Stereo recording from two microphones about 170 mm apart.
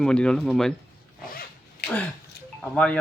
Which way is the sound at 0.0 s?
5° left (ahead or behind).